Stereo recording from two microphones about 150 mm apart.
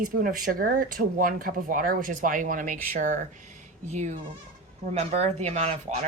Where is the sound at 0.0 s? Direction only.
70° right (ahead or behind).